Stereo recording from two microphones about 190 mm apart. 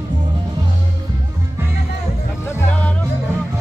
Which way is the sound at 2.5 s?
10° left (ahead or behind).